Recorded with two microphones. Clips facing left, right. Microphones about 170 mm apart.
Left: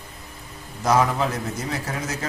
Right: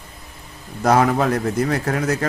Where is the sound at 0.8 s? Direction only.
60° right (ahead or behind).